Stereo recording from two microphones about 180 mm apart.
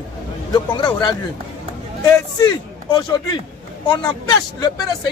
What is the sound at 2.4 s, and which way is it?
Speech, 25° left (ahead or behind).